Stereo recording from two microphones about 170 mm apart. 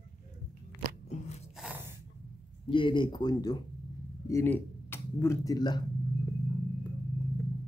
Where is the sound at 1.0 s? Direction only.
40° left (ahead or behind).